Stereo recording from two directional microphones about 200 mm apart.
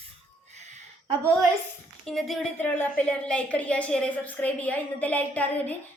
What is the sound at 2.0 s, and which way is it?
A woman's voice, centre (ahead or behind).